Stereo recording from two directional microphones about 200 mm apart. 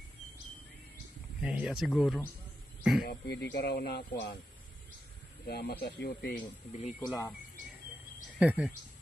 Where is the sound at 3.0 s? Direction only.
55° left (ahead or behind).